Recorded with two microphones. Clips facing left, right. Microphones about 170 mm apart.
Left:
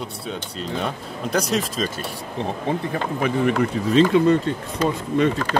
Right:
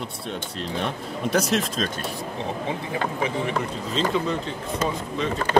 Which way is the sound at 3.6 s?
60° left (ahead or behind).